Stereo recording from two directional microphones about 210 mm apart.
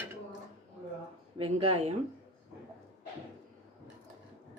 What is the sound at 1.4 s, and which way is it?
Speech, 30° right (ahead or behind).